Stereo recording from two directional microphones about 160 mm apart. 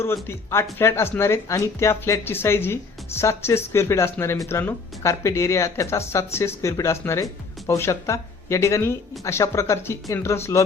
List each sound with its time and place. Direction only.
0.0 s speech: 15° left (ahead or behind)